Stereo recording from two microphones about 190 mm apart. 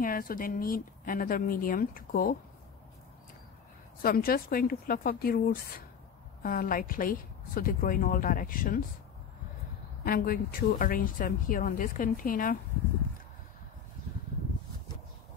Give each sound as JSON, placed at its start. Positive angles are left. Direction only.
{"t": 0.0, "sound": "speech", "side_deg": 50}
{"t": 4.0, "sound": "speech", "side_deg": 50}
{"t": 10.0, "sound": "speech", "side_deg": 50}